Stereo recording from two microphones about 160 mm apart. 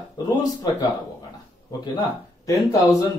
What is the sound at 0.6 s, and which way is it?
Speech, 25° left (ahead or behind).